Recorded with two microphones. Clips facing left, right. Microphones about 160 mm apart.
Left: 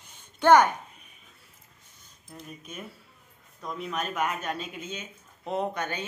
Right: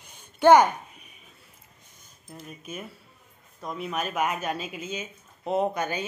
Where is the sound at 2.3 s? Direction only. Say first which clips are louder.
Right 3 dB; 5° right (ahead or behind).